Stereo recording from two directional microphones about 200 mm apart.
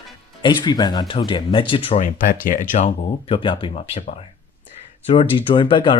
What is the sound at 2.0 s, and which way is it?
Speech, 40° left (ahead or behind).